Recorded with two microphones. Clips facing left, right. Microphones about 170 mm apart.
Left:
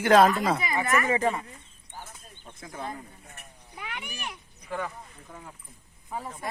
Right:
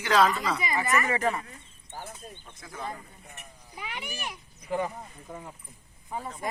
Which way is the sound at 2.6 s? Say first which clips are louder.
Left 2 dB; 30° left (ahead or behind).